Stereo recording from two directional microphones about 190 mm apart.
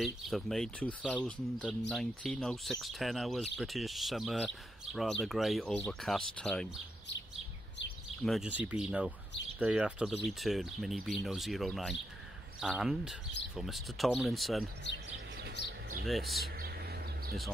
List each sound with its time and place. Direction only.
0.0 s speech: centre (ahead or behind)
8.2 s speech: centre (ahead or behind)
15.0 s chirp: 55° right (ahead or behind)
16.1 s speech: centre (ahead or behind)
16.5 s bird: 55° right (ahead or behind)